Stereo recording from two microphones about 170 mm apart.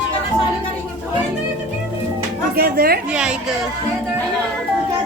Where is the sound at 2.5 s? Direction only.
65° right (ahead or behind).